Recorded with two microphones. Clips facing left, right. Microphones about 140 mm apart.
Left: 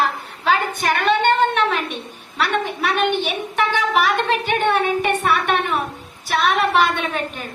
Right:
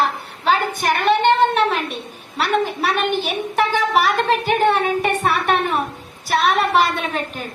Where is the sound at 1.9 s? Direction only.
35° right (ahead or behind).